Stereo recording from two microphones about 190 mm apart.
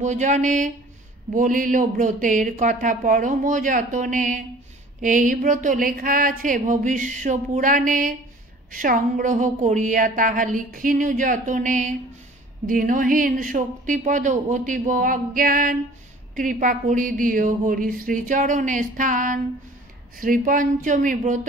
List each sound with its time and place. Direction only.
0.0 s a woman's voice: 40° right (ahead or behind)